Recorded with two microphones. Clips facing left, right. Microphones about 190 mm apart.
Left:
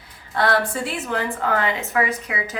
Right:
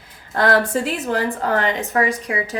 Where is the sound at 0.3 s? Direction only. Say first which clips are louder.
Right 3 dB; 45° right (ahead or behind).